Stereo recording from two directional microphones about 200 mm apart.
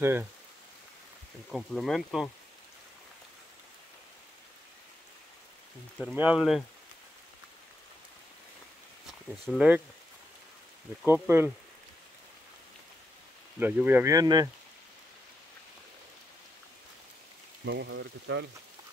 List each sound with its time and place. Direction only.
0.0 s speech: 10° right (ahead or behind)
1.5 s speech: centre (ahead or behind)
6.1 s speech: 5° right (ahead or behind)
9.0 s speech: 5° right (ahead or behind)
11.1 s speech: 10° right (ahead or behind)
13.6 s speech: 10° right (ahead or behind)
17.6 s speech: 60° right (ahead or behind)